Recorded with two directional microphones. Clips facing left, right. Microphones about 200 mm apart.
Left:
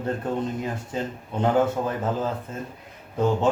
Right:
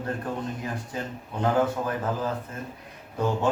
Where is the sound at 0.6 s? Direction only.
25° left (ahead or behind).